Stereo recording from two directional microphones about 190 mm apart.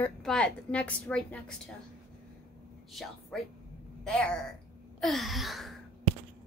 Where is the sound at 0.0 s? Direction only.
5° left (ahead or behind).